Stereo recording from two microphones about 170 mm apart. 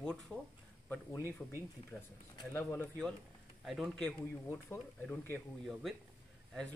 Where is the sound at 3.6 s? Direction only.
Centre (ahead or behind).